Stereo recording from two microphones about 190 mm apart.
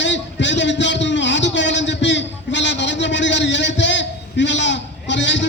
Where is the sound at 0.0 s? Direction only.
70° left (ahead or behind).